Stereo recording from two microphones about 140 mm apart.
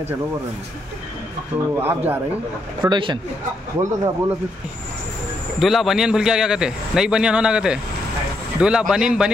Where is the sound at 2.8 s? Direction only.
35° right (ahead or behind).